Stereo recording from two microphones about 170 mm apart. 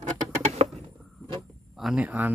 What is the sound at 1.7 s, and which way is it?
Speech, centre (ahead or behind).